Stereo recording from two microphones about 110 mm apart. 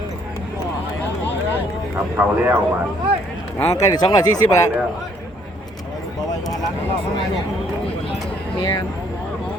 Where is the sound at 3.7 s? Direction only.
35° left (ahead or behind).